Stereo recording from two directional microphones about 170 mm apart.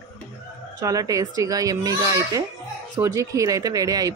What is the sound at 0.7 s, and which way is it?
A woman's voice, 20° right (ahead or behind).